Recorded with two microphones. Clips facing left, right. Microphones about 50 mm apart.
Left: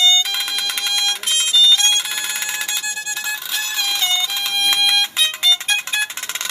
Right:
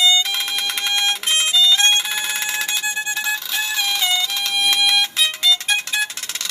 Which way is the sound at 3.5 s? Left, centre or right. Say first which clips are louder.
Right 1 dB; centre.